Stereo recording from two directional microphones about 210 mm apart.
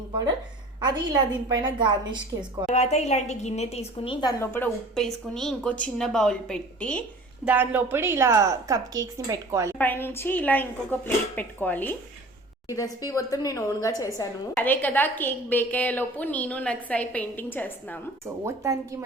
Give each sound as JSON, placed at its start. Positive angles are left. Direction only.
{"t": 0.8, "sound": "a woman's voice", "side_deg": -20}
{"t": 2.6, "sound": "a woman's voice", "side_deg": 35}
{"t": 7.4, "sound": "a woman's voice", "side_deg": -10}
{"t": 9.7, "sound": "a woman's voice", "side_deg": 10}
{"t": 18.4, "sound": "a woman's voice", "side_deg": -15}